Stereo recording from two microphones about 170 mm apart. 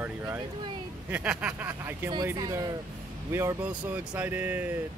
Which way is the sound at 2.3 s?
20° right (ahead or behind).